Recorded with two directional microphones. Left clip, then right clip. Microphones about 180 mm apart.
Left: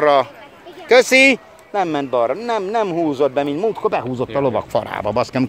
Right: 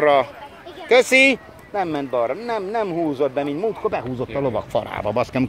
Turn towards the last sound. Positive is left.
turn(degrees=20)  # may be behind; listen again after turning